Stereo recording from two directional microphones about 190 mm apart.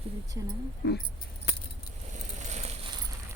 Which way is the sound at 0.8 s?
55° left (ahead or behind).